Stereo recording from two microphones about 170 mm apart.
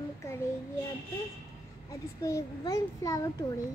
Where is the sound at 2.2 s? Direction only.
20° left (ahead or behind).